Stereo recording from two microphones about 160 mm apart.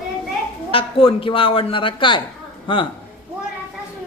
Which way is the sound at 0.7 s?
35° left (ahead or behind).